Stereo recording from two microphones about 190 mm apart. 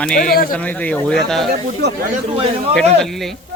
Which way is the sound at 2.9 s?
Centre (ahead or behind).